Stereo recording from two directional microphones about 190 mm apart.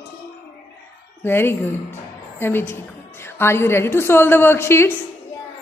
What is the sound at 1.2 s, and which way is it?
A woman's voice, 10° left (ahead or behind).